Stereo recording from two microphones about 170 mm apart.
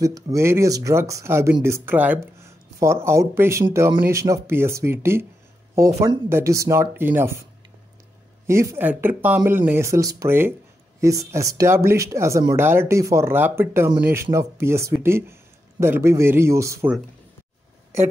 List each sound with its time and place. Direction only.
0.0 s speech: 20° right (ahead or behind)
8.5 s speech: 15° right (ahead or behind)